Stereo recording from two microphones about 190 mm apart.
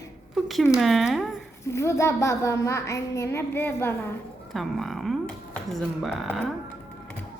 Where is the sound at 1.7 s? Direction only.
15° left (ahead or behind).